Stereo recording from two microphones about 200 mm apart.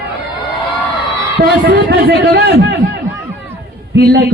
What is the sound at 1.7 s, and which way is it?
A man's voice, 65° right (ahead or behind).